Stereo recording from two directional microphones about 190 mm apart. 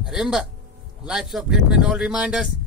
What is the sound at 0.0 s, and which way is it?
Speech, centre (ahead or behind).